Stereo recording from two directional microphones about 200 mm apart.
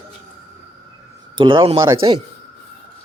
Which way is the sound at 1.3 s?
25° right (ahead or behind).